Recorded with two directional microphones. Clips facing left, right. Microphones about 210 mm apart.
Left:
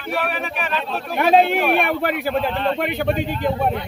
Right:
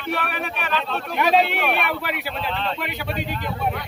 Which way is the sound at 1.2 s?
50° left (ahead or behind).